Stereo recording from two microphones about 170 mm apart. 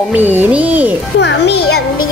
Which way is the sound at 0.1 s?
10° right (ahead or behind).